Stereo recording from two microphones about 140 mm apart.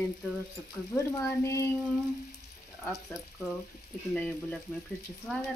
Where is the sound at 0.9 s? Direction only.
20° left (ahead or behind).